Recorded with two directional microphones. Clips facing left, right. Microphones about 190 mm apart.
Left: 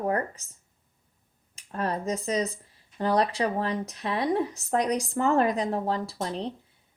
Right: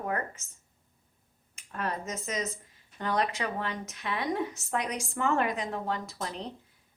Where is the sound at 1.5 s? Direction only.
35° left (ahead or behind).